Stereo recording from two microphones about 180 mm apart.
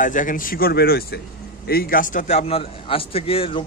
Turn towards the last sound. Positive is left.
turn(degrees=30)  # may be behind; listen again after turning